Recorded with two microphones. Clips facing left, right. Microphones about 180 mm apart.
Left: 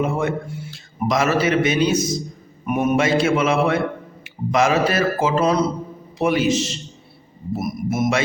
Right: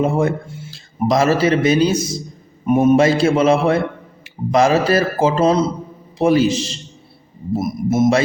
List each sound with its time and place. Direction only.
0.0 s a man's voice: 35° right (ahead or behind)